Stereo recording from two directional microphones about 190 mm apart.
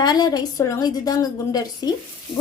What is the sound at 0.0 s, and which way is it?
A woman's voice, 20° left (ahead or behind).